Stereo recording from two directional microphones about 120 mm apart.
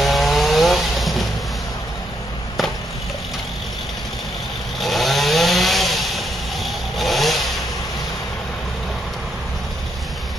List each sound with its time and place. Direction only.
0.0 s chainsaw: centre (ahead or behind)
4.7 s chainsaw: centre (ahead or behind)